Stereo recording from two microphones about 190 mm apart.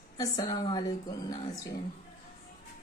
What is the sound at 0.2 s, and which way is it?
A woman's voice, 20° left (ahead or behind).